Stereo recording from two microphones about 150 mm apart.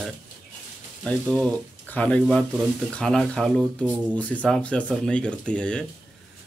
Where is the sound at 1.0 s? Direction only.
5° left (ahead or behind).